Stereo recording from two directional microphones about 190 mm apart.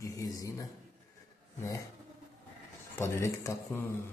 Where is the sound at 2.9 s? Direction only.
15° left (ahead or behind).